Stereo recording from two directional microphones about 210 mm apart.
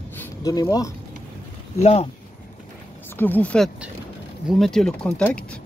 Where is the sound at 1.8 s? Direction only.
30° left (ahead or behind).